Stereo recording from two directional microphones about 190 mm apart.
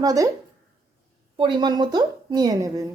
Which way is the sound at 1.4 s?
25° right (ahead or behind).